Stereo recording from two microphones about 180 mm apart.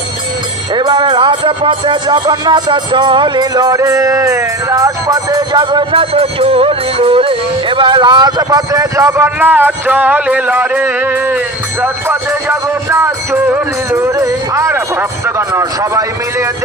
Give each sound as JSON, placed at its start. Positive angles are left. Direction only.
{"t": 0.7, "sound": "music", "side_deg": -25}
{"t": 11.8, "sound": "speech", "side_deg": -10}